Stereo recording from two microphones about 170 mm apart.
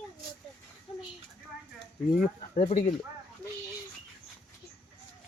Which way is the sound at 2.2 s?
45° left (ahead or behind).